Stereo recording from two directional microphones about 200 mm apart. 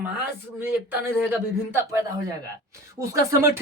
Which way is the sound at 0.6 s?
10° right (ahead or behind).